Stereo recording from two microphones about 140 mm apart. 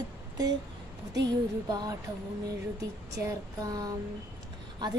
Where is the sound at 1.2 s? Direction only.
30° right (ahead or behind).